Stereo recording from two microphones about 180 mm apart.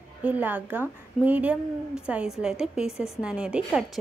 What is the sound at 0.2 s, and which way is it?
Speech, 10° right (ahead or behind).